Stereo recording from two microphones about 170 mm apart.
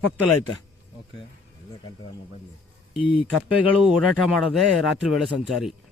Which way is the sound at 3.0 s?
30° left (ahead or behind).